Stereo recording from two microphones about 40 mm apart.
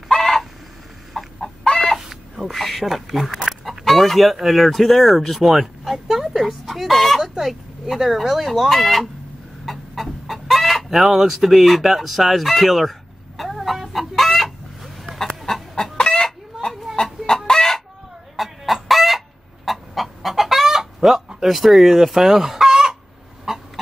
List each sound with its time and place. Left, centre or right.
0.1 s a sound: centre
1.1 s chicken: centre
2.0 s chicken: centre
2.5 s a woman's voice: centre
3.3 s speech: centre
3.8 s a woman's voice: centre
7.2 s speech: centre
9.7 s chicken: centre
15.7 s chicken: centre
18.3 s chicken: centre